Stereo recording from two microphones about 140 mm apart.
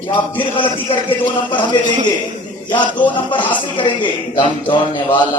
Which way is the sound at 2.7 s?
35° left (ahead or behind).